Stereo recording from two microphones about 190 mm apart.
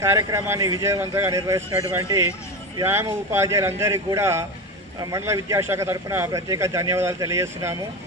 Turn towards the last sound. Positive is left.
turn(degrees=-15)  # may be behind; listen again after turning